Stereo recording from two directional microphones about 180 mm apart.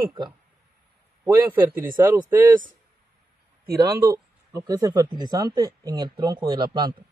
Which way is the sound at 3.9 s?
15° right (ahead or behind).